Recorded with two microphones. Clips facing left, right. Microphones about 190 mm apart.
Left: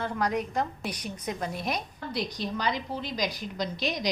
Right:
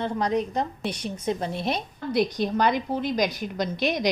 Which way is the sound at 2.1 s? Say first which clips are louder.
Right 9 dB; 55° right (ahead or behind).